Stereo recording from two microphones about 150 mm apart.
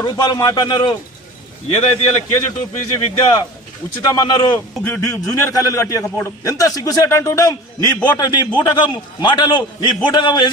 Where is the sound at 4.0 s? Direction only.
25° left (ahead or behind).